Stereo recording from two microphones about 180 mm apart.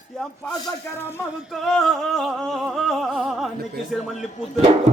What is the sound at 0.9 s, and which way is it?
Speech, 15° left (ahead or behind).